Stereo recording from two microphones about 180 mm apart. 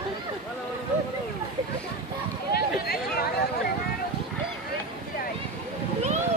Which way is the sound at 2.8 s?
60° left (ahead or behind).